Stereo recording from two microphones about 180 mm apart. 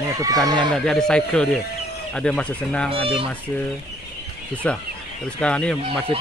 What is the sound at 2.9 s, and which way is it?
Speech, 30° right (ahead or behind).